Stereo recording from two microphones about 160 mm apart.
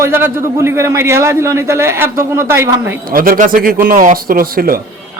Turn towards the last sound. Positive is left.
turn(degrees=-65)  # may be behind; listen again after turning